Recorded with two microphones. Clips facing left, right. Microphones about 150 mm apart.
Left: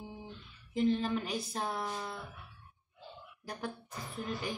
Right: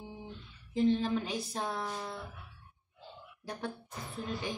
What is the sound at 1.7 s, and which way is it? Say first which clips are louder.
Music: even; 5° left (ahead or behind).